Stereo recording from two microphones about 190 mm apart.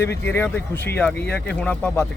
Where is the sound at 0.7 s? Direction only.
60° left (ahead or behind).